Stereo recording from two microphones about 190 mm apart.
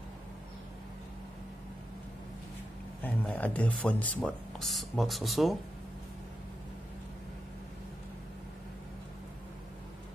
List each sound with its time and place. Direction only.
3.0 s speech: 10° left (ahead or behind)